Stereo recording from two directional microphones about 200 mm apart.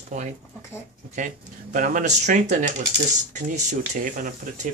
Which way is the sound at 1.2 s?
40° right (ahead or behind).